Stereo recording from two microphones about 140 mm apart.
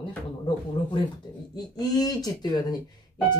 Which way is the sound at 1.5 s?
30° left (ahead or behind).